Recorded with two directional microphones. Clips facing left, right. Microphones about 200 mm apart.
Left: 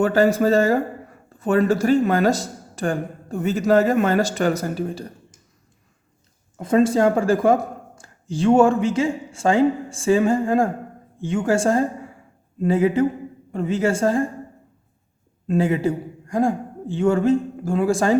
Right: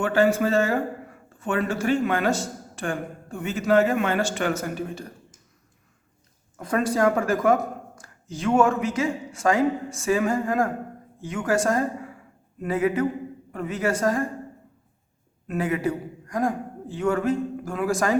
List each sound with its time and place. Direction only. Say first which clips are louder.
0.0 s speech: left 4 dB; 40° left (ahead or behind)
6.6 s speech: left 6 dB; 25° left (ahead or behind)
15.4 s a man's voice: left 5 dB; 25° left (ahead or behind)